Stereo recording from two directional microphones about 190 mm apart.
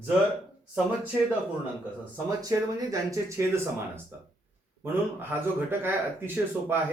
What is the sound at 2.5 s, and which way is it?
Speech, 15° right (ahead or behind).